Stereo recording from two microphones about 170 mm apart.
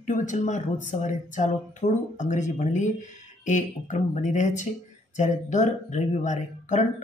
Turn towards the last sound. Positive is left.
turn(degrees=45)  # may be behind; listen again after turning